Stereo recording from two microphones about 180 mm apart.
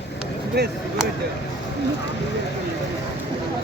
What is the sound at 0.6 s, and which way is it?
Speech, 65° right (ahead or behind).